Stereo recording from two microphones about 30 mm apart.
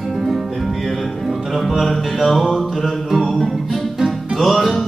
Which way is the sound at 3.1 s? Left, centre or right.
Centre.